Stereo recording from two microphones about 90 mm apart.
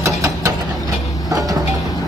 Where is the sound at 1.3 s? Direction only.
40° right (ahead or behind).